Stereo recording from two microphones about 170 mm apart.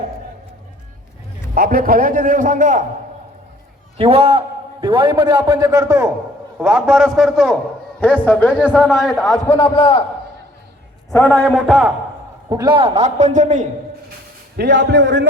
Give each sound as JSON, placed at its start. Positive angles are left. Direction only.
{"t": 1.5, "sound": "a man's voice", "side_deg": -55}
{"t": 3.9, "sound": "a man's voice", "side_deg": -35}
{"t": 6.6, "sound": "a man's voice", "side_deg": -5}
{"t": 8.5, "sound": "a man's voice", "side_deg": -5}
{"t": 9.5, "sound": "a man's voice", "side_deg": 30}
{"t": 11.1, "sound": "a man's voice", "side_deg": 10}
{"t": 12.5, "sound": "a man's voice", "side_deg": -25}
{"t": 14.5, "sound": "speech", "side_deg": -80}